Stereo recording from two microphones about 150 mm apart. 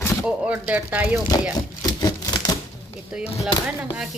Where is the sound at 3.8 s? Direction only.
5° right (ahead or behind).